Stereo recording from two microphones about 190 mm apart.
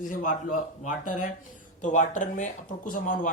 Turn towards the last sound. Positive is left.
turn(degrees=45)  # may be behind; listen again after turning